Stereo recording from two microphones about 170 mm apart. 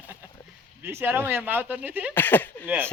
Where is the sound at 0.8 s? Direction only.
10° right (ahead or behind).